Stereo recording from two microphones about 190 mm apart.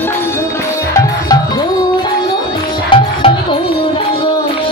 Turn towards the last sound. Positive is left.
turn(degrees=25)  # may be behind; listen again after turning